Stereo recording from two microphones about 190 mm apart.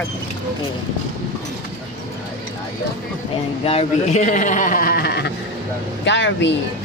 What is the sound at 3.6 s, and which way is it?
A man's voice, 30° left (ahead or behind).